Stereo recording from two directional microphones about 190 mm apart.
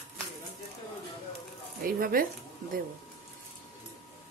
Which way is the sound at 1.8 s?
50° right (ahead or behind).